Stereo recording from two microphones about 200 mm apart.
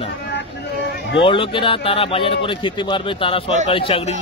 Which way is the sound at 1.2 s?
25° left (ahead or behind).